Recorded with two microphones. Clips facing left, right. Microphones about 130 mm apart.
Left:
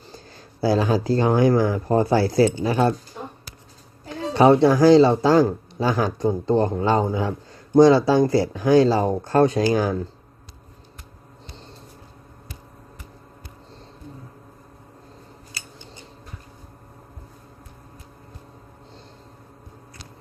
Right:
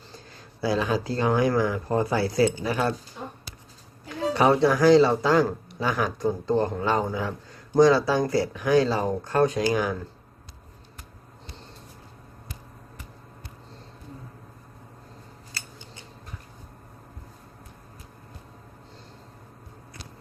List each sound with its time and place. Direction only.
0.6 s speech: 35° left (ahead or behind)
4.4 s speech: 30° left (ahead or behind)